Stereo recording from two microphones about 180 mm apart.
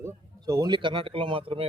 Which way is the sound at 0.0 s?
20° right (ahead or behind).